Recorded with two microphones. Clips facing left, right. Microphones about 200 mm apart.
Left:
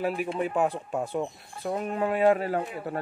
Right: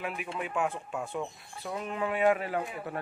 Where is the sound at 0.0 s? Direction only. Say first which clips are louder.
Left 8 dB; 35° left (ahead or behind).